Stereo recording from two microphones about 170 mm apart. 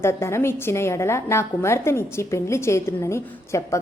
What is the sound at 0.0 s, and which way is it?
A woman's voice, 15° left (ahead or behind).